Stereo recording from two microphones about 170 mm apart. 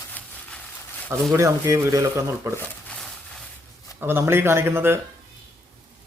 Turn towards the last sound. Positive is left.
turn(degrees=-15)  # may be behind; listen again after turning